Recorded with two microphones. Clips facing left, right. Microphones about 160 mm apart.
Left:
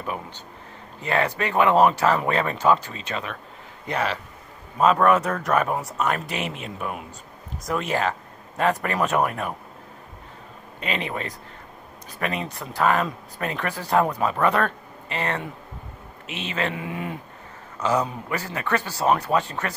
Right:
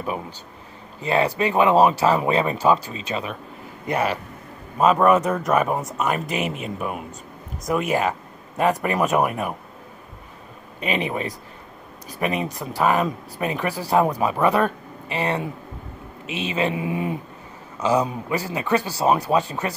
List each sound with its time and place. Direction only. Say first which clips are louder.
1.0 s a man's voice: right 3 dB; 15° right (ahead or behind)
10.8 s speech: right 4 dB; 15° right (ahead or behind)